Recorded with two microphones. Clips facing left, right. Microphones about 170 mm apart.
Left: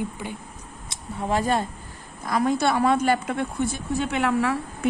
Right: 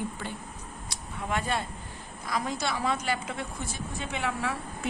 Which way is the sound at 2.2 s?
55° left (ahead or behind).